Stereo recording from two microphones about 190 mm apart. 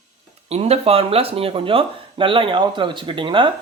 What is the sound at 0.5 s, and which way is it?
Speech, 30° right (ahead or behind).